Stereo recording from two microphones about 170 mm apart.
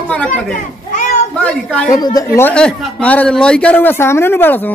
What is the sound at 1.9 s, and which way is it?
Speech, 20° left (ahead or behind).